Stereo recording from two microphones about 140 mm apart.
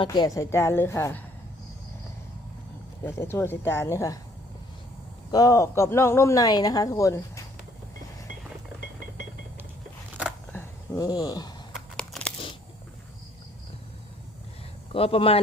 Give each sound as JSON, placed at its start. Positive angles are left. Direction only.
{"t": 0.0, "sound": "speech", "side_deg": 30}
{"t": 3.1, "sound": "speech", "side_deg": 15}
{"t": 5.3, "sound": "speech", "side_deg": 25}
{"t": 10.5, "sound": "a sound", "side_deg": 20}
{"t": 11.9, "sound": "a sound", "side_deg": 5}
{"t": 14.9, "sound": "a man's voice", "side_deg": 45}